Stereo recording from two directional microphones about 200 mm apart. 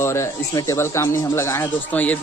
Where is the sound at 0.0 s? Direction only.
15° left (ahead or behind).